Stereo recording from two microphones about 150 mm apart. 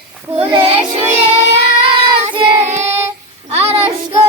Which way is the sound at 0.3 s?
40° right (ahead or behind).